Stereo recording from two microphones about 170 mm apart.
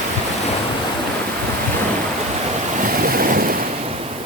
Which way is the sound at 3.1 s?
60° right (ahead or behind).